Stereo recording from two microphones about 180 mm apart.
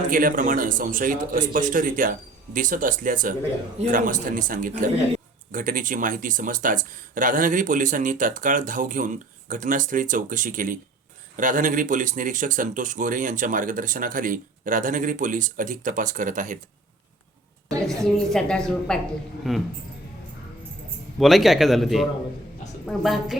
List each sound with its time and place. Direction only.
0.1 s a man's voice: 50° right (ahead or behind)
17.8 s a woman's voice: centre (ahead or behind)
21.2 s a woman's voice: centre (ahead or behind)